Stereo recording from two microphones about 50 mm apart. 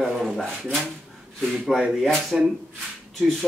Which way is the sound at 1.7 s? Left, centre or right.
Centre.